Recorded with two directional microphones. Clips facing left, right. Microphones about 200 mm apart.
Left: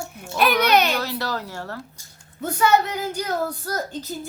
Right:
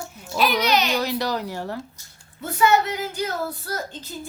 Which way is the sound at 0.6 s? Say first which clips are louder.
Left 3 dB; 55° left (ahead or behind).